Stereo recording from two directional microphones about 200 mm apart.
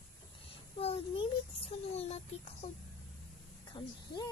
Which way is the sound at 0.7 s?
30° left (ahead or behind).